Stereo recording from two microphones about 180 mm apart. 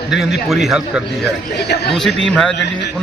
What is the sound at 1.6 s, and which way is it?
Speech, 65° left (ahead or behind).